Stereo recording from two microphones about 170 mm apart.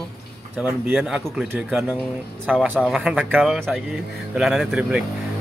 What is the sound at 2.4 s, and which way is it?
Speech, 5° right (ahead or behind).